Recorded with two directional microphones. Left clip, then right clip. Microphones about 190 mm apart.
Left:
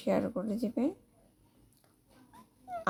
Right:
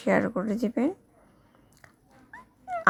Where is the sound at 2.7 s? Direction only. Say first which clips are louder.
Right 8 dB; 25° right (ahead or behind).